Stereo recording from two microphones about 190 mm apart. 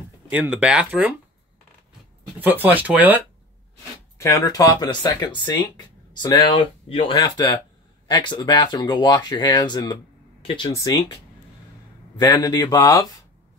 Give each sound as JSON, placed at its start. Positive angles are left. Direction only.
{"t": 0.3, "sound": "speech", "side_deg": -5}
{"t": 2.4, "sound": "speech", "side_deg": -10}
{"t": 4.2, "sound": "speech", "side_deg": 15}
{"t": 12.3, "sound": "speech", "side_deg": 20}